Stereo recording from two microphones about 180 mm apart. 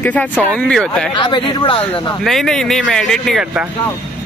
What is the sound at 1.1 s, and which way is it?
Speech, 25° left (ahead or behind).